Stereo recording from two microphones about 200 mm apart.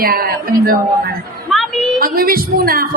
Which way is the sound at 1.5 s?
Centre (ahead or behind).